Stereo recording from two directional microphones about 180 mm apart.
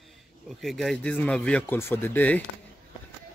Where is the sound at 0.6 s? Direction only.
Centre (ahead or behind).